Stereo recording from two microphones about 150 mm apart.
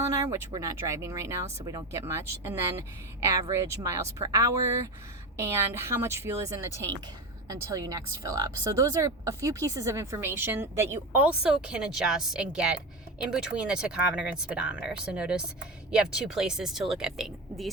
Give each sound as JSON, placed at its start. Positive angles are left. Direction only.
{"t": 0.0, "sound": "speech", "side_deg": -20}